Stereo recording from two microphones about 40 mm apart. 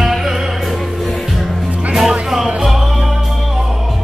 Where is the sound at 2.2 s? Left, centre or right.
Centre.